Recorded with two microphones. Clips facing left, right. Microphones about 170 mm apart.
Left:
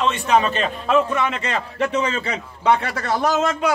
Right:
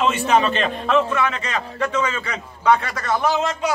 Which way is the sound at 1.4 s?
30° left (ahead or behind).